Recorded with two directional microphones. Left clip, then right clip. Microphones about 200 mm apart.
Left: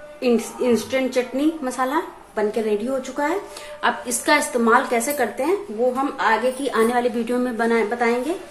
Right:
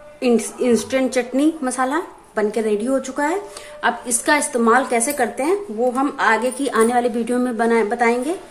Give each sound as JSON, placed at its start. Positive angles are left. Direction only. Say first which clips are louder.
{"t": 0.2, "sound": "a woman's voice", "louder": "right 2 dB", "side_deg": -15}